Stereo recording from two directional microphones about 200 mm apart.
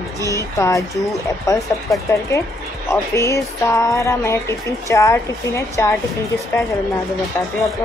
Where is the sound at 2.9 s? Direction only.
15° left (ahead or behind).